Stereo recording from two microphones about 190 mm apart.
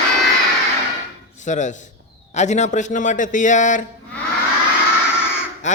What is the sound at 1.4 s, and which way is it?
Speech, 40° left (ahead or behind).